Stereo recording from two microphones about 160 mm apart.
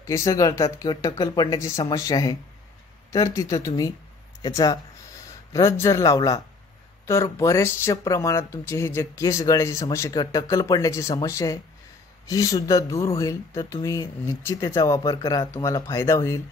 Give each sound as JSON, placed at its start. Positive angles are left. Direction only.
{"t": 0.0, "sound": "speech", "side_deg": 20}